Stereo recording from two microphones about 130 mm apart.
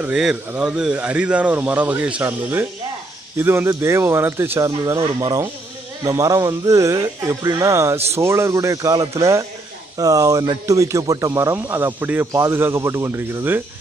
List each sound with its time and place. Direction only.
0.0 s speech: 5° right (ahead or behind)